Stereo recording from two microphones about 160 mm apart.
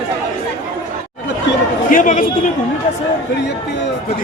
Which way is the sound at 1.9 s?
55° left (ahead or behind).